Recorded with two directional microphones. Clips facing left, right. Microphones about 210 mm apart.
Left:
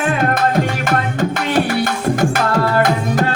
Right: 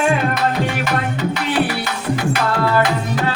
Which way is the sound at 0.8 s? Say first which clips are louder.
Left 2 dB; 45° left (ahead or behind).